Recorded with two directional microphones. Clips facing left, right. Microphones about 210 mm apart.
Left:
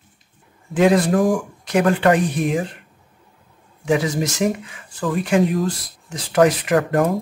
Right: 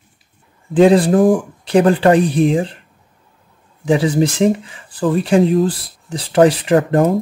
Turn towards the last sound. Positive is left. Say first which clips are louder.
# right 4 dB
turn(degrees=-25)  # may be behind; listen again after turning